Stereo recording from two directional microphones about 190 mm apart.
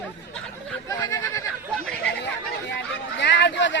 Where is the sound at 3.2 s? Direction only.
65° left (ahead or behind).